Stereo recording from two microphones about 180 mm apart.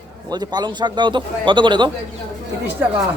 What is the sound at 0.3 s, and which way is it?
Speech, 25° right (ahead or behind).